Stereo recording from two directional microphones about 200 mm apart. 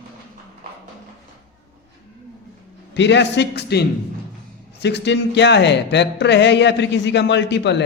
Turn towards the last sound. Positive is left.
turn(degrees=60)  # may be behind; listen again after turning